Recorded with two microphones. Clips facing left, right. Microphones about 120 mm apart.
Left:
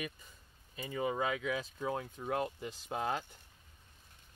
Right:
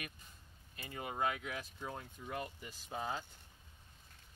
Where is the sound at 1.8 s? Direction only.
90° left.